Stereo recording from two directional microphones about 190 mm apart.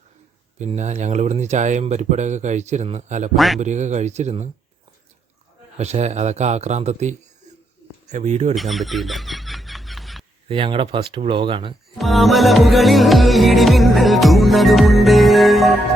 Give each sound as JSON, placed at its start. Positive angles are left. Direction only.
{"t": 0.6, "sound": "speech", "side_deg": -40}
{"t": 3.3, "sound": "music", "side_deg": 0}
{"t": 3.6, "sound": "speech", "side_deg": -40}
{"t": 5.7, "sound": "speech", "side_deg": -35}
{"t": 8.5, "sound": "fowl", "side_deg": 0}
{"t": 10.5, "sound": "speech", "side_deg": -25}
{"t": 11.9, "sound": "music", "side_deg": 0}